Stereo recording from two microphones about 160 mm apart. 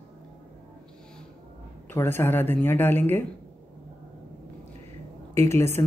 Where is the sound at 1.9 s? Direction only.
15° left (ahead or behind).